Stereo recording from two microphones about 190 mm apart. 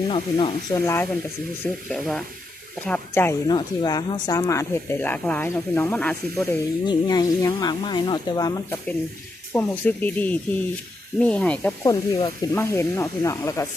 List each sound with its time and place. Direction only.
0.1 s speech: 25° left (ahead or behind)
0.8 s speech: 15° left (ahead or behind)
3.4 s speech: 20° left (ahead or behind); by 6.6 s 5° left (ahead or behind)
6.8 s speech: 20° left (ahead or behind)
11.8 s speech: 20° left (ahead or behind)